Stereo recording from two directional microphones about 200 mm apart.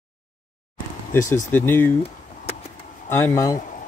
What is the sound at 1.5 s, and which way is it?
Speech, 10° left (ahead or behind).